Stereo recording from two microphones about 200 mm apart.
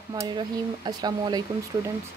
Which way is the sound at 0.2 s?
20° right (ahead or behind).